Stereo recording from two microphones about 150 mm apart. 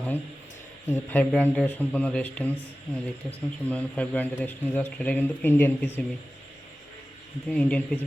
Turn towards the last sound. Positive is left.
turn(degrees=10)  # may be behind; listen again after turning